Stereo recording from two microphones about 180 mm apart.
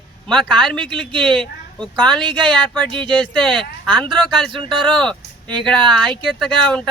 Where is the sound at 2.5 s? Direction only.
5° left (ahead or behind).